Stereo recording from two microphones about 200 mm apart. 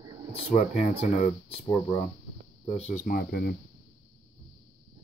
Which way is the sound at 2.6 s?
35° left (ahead or behind).